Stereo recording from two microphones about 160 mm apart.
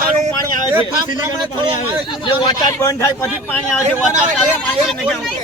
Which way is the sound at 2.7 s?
20° left (ahead or behind).